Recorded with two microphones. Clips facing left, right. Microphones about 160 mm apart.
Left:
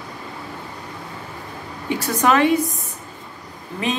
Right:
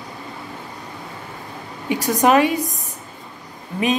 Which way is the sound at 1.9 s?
15° right (ahead or behind).